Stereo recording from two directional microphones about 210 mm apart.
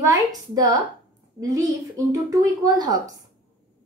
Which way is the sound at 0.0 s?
15° right (ahead or behind).